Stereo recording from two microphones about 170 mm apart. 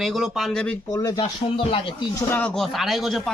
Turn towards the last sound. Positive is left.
turn(degrees=0)  # may be behind; listen again after turning